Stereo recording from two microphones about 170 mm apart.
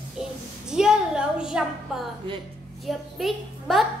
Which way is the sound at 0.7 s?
5° right (ahead or behind).